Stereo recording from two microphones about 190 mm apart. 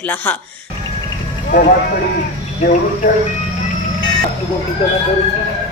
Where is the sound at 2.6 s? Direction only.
45° left (ahead or behind).